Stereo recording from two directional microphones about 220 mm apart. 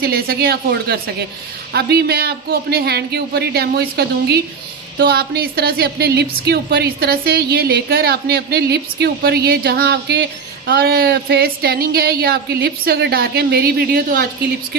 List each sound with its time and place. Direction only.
0.0 s a woman's voice: 45° right (ahead or behind)